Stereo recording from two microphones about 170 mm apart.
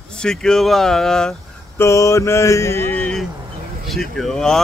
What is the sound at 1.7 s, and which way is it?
Mantra, 15° left (ahead or behind).